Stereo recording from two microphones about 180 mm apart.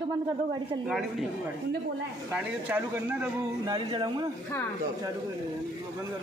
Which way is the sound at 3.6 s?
25° right (ahead or behind).